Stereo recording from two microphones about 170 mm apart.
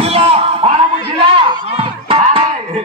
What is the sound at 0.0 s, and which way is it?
Music, 35° right (ahead or behind).